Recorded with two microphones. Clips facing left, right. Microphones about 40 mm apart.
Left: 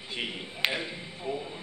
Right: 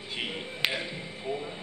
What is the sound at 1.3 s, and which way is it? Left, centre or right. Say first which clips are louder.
Speech: even; centre.